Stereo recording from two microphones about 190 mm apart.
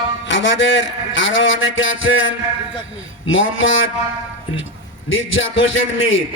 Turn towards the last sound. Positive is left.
turn(degrees=90)